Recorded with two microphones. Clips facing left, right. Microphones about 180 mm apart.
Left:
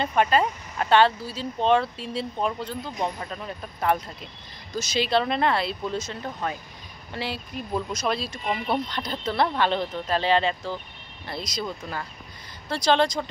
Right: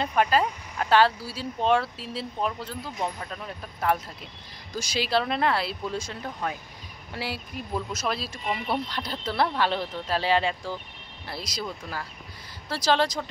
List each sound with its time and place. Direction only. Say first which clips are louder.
0.0 s speech: left 1 dB; centre (ahead or behind)
12.6 s speech: left 2 dB; 5° right (ahead or behind)